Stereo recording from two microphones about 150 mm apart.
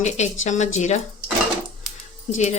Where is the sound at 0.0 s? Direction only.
50° left (ahead or behind).